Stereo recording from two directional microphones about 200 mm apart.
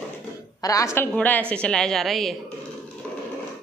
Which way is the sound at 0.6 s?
15° left (ahead or behind).